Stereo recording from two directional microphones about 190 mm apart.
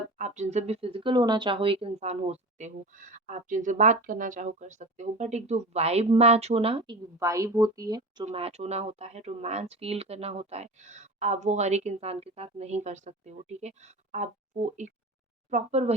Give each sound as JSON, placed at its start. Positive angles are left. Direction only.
{"t": 0.2, "sound": "speech", "side_deg": -40}
{"t": 7.2, "sound": "a woman's voice", "side_deg": -15}
{"t": 8.2, "sound": "speech", "side_deg": -30}